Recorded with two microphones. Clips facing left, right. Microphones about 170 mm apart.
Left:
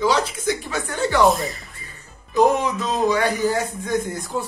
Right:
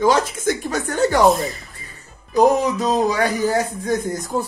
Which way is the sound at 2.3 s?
40° right (ahead or behind).